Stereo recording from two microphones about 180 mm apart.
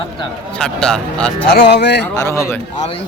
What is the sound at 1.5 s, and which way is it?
Speech, 70° left (ahead or behind).